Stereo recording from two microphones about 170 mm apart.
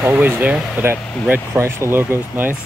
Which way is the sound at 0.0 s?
10° right (ahead or behind).